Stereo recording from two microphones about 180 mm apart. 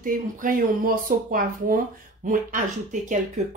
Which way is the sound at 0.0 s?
50° right (ahead or behind).